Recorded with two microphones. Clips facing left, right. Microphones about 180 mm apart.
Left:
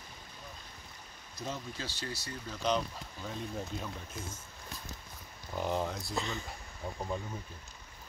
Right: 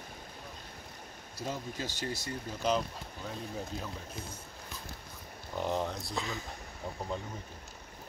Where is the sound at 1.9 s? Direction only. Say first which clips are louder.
Right 4 dB; 45° right (ahead or behind).